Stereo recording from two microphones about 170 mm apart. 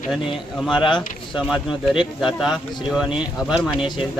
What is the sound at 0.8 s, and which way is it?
Speech, 30° left (ahead or behind).